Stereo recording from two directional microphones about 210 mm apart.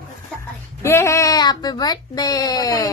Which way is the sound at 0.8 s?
15° left (ahead or behind).